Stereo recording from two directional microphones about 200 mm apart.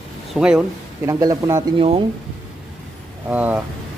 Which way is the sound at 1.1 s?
20° right (ahead or behind).